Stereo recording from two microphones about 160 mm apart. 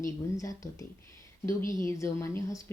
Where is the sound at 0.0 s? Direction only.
20° left (ahead or behind).